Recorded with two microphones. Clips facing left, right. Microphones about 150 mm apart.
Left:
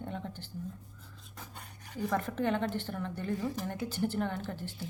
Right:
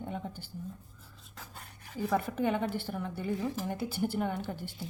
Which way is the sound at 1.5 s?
5° right (ahead or behind).